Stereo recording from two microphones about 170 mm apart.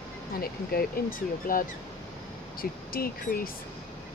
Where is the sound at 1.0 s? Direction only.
60° left (ahead or behind).